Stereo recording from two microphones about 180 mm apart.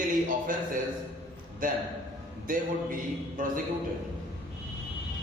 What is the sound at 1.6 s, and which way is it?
A man's voice, 50° right (ahead or behind).